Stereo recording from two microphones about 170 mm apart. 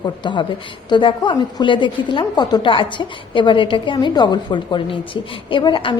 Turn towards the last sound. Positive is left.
turn(degrees=30)  # may be behind; listen again after turning